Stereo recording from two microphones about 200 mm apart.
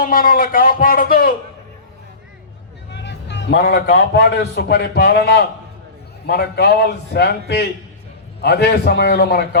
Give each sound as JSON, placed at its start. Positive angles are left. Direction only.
{"t": 0.0, "sound": "speech", "side_deg": 45}
{"t": 2.9, "sound": "a man's voice", "side_deg": 60}